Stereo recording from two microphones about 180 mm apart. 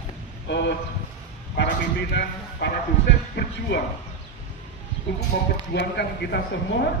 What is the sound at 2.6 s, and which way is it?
A man's voice, 70° left (ahead or behind).